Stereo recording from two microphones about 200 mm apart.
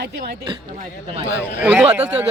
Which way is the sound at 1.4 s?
10° right (ahead or behind).